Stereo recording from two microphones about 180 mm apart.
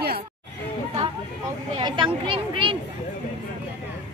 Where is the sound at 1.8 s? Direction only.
25° right (ahead or behind).